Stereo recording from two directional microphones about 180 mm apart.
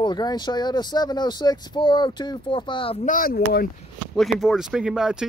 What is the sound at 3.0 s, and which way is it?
Speech, 55° left (ahead or behind).